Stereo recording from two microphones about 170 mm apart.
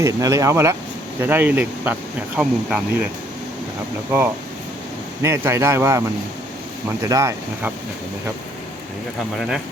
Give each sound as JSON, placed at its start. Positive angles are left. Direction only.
{"t": 0.0, "sound": "speech", "side_deg": -20}
{"t": 5.2, "sound": "speech", "side_deg": -15}